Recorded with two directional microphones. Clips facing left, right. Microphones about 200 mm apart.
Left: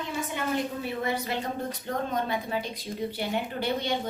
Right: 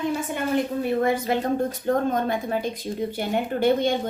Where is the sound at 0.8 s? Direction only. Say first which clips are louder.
Right 8 dB; 50° right (ahead or behind).